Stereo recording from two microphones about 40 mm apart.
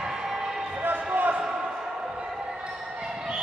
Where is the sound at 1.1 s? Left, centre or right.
Right.